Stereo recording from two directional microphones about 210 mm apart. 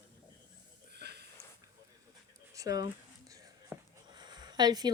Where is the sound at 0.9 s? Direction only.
50° right (ahead or behind).